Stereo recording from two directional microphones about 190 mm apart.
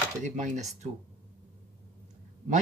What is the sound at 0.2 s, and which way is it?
Speech, 40° right (ahead or behind).